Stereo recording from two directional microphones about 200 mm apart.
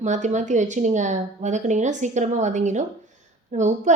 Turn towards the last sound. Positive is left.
turn(degrees=-35)  # may be behind; listen again after turning